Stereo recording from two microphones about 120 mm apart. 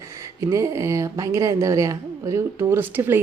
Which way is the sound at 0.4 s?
25° right (ahead or behind).